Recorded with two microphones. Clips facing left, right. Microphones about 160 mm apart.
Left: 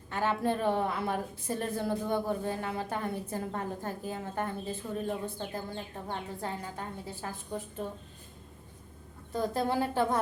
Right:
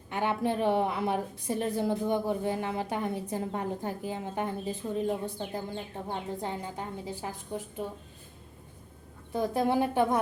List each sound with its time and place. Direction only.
0.1 s a woman's voice: 15° right (ahead or behind)
9.3 s a woman's voice: 15° right (ahead or behind)